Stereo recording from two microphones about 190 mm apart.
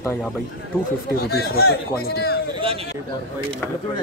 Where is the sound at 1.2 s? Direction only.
55° left (ahead or behind).